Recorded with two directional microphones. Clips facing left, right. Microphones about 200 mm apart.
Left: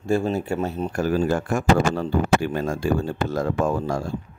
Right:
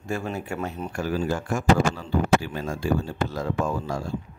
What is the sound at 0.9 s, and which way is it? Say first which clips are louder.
Speech: left 5 dB; 50° left (ahead or behind).